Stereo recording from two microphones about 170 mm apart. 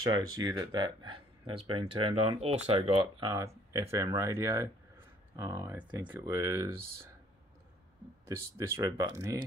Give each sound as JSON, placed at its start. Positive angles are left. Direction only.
{"t": 0.3, "sound": "speech", "side_deg": -20}
{"t": 8.3, "sound": "speech", "side_deg": -15}